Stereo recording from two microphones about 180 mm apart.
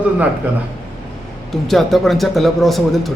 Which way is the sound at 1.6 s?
Centre (ahead or behind).